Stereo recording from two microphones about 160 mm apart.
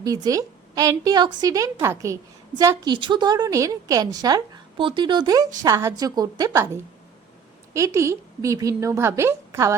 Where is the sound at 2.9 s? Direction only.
30° right (ahead or behind).